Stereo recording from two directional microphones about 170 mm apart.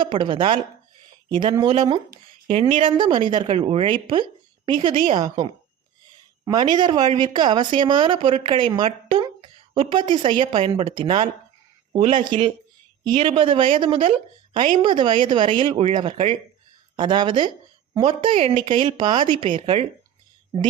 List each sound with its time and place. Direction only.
0.0 s speech: 30° right (ahead or behind)